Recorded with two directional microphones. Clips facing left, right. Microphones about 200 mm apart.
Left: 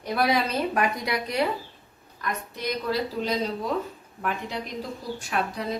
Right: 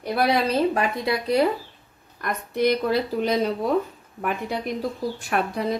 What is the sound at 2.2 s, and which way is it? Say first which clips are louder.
A woman's voice: right 9 dB; 55° right (ahead or behind).